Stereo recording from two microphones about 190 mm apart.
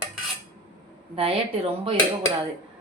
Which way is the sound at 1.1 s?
30° right (ahead or behind).